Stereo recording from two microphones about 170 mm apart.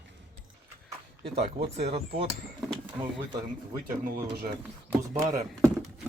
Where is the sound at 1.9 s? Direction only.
35° right (ahead or behind).